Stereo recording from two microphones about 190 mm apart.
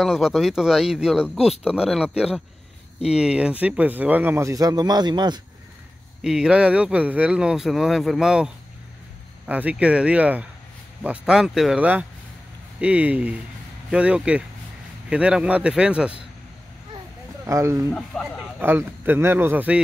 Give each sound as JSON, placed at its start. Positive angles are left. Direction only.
{"t": 0.0, "sound": "speech", "side_deg": 0}
{"t": 6.2, "sound": "speech", "side_deg": -5}
{"t": 9.5, "sound": "speech", "side_deg": -10}
{"t": 17.5, "sound": "speech", "side_deg": -15}
{"t": 17.9, "sound": "speech", "side_deg": 5}
{"t": 18.6, "sound": "speech", "side_deg": -10}